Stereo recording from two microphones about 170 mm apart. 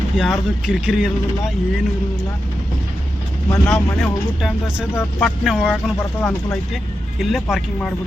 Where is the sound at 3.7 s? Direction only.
Centre (ahead or behind).